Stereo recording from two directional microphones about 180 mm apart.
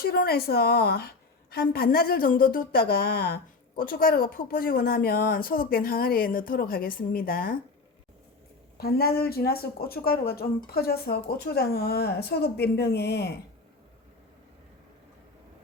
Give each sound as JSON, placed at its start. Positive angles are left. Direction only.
{"t": 0.0, "sound": "a woman's voice", "side_deg": 60}
{"t": 8.8, "sound": "a woman's voice", "side_deg": 60}